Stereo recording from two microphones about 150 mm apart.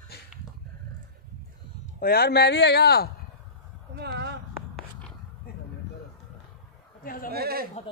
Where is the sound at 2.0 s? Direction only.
90° left.